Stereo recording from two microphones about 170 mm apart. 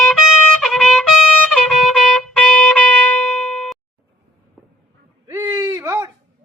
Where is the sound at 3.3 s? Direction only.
Centre (ahead or behind).